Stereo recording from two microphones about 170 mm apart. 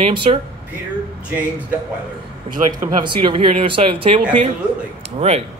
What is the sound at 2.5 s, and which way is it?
Speech, 25° right (ahead or behind).